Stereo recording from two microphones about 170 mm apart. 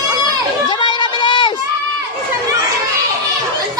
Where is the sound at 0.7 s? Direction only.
25° left (ahead or behind).